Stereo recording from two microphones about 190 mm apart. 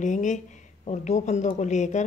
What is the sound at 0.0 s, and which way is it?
A woman's voice, 40° left (ahead or behind).